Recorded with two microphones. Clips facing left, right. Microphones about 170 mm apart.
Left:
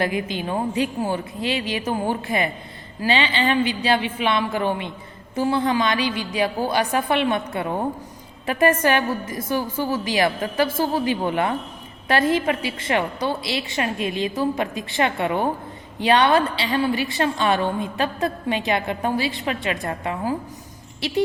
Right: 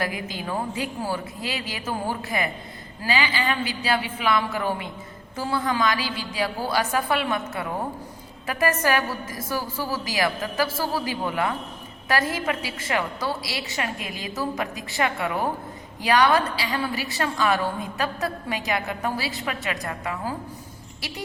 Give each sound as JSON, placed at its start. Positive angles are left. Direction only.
{"t": 0.0, "sound": "a woman's voice", "side_deg": 25}
{"t": 8.4, "sound": "a woman's voice", "side_deg": 25}